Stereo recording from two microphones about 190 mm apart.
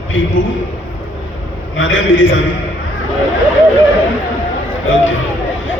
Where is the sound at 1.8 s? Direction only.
90° left.